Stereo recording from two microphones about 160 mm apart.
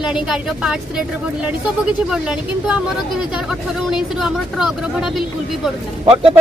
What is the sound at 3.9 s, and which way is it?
Speech, 5° right (ahead or behind).